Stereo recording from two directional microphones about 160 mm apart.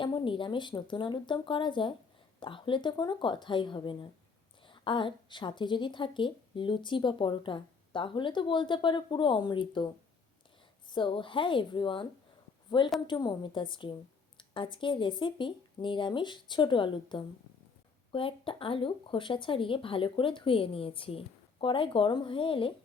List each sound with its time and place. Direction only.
0.0 s a woman's voice: 30° left (ahead or behind)